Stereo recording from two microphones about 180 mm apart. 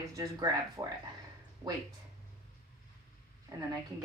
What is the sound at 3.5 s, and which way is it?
Speech, 20° right (ahead or behind).